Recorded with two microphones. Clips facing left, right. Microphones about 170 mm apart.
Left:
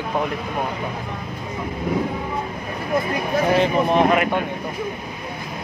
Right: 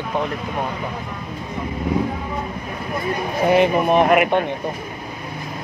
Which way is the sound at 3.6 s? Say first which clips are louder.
Right 3 dB; 15° right (ahead or behind).